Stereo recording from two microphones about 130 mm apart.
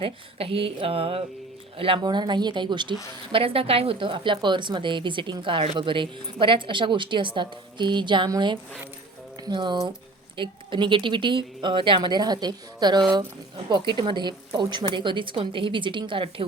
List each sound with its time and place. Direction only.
0.0 s a woman's voice: 45° right (ahead or behind)